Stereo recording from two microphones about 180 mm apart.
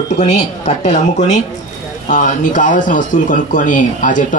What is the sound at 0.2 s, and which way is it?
Speech, 40° left (ahead or behind).